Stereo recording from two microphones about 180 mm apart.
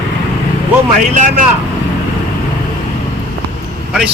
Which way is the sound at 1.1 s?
45° right (ahead or behind).